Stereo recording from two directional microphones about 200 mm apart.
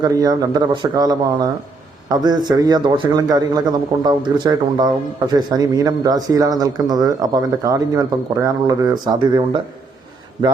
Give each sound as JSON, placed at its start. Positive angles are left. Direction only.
{"t": 0.0, "sound": "speech", "side_deg": -20}